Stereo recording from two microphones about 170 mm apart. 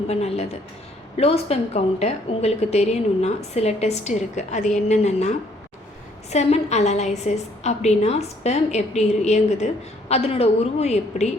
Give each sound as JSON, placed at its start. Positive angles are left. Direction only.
{"t": 0.1, "sound": "a woman's voice", "side_deg": 40}